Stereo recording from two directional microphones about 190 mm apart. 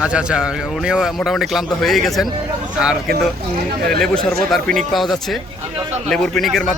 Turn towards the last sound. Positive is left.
turn(degrees=0)  # may be behind; listen again after turning